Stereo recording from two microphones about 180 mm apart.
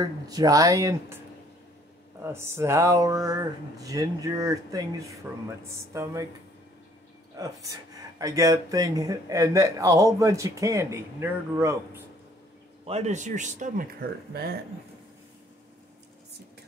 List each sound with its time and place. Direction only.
0.0 s speech: 20° right (ahead or behind)
2.2 s a man's voice: 15° right (ahead or behind)
8.2 s a man's voice: 20° right (ahead or behind)
12.8 s speech: 35° right (ahead or behind)
14.3 s speech: 60° right (ahead or behind)